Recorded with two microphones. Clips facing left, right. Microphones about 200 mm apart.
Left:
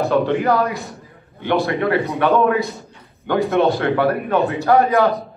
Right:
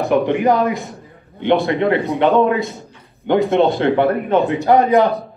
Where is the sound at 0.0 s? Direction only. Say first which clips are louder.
Right 2 dB; 15° right (ahead or behind).